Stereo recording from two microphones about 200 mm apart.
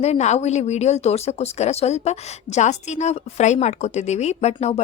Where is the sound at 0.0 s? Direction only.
35° left (ahead or behind).